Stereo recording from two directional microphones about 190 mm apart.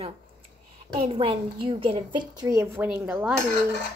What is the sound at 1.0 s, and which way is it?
A woman's voice, 30° right (ahead or behind).